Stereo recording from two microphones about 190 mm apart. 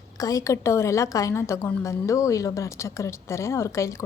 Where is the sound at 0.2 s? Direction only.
20° left (ahead or behind).